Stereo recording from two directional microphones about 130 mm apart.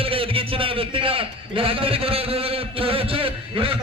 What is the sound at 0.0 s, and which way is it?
A man's voice, 45° right (ahead or behind).